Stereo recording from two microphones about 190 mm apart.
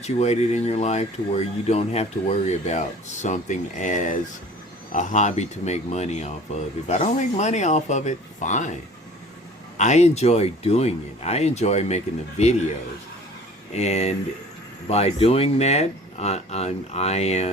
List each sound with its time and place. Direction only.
0.0 s speech: 35° left (ahead or behind)
9.7 s speech: 40° left (ahead or behind)
13.7 s speech: 35° left (ahead or behind)